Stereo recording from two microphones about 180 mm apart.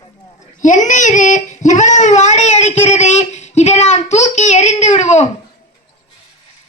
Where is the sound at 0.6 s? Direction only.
45° left (ahead or behind).